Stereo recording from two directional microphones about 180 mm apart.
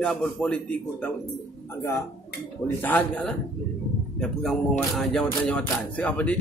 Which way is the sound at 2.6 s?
10° left (ahead or behind).